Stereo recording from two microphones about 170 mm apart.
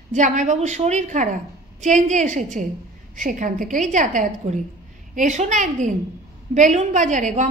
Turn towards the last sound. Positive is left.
turn(degrees=-45)  # may be behind; listen again after turning